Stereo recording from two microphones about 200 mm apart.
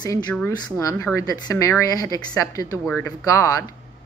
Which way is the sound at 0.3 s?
5° left (ahead or behind).